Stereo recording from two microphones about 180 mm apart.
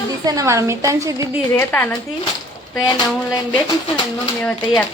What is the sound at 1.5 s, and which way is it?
A woman's voice, 10° left (ahead or behind).